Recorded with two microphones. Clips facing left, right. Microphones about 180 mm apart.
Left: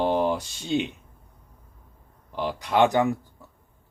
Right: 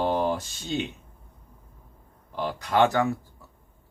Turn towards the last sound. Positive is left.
turn(degrees=15)  # may be behind; listen again after turning